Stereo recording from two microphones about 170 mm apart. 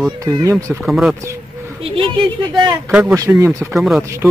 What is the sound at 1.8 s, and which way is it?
A woman's voice, 30° right (ahead or behind).